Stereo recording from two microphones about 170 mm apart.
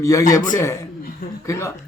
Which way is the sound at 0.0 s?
20° left (ahead or behind).